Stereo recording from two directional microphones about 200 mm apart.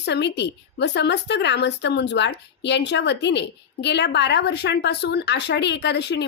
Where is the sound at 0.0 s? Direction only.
60° left (ahead or behind).